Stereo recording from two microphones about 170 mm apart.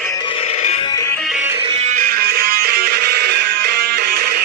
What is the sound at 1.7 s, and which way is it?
Music, 45° right (ahead or behind).